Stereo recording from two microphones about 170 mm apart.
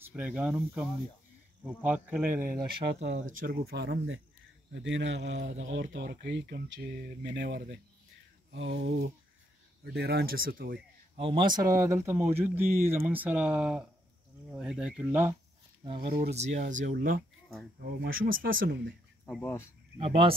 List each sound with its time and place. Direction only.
0.0 s speech: 10° right (ahead or behind)
2.2 s speech: 55° right (ahead or behind)
3.0 s speech: 45° right (ahead or behind); by 4.1 s 75° right (ahead or behind)
4.7 s speech: 90° right
5.9 s speech: 80° right
8.5 s a sound: 90° right
9.9 s speech: 75° right (ahead or behind)
11.1 s speech: 30° right (ahead or behind)
11.8 s speech: 15° right (ahead or behind)
15.8 s speech: 35° right (ahead or behind)
16.8 s speech: 60° right (ahead or behind)
19.4 s speech: 15° left (ahead or behind)
20.0 s speech: 30° right (ahead or behind)